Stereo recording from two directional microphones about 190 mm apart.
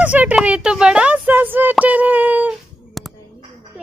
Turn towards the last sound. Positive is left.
turn(degrees=-5)  # may be behind; listen again after turning